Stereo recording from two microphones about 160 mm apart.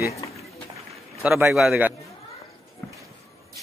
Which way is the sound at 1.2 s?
10° right (ahead or behind).